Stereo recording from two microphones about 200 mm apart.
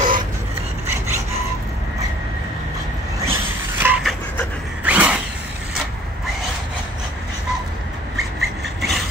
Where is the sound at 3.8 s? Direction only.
10° right (ahead or behind).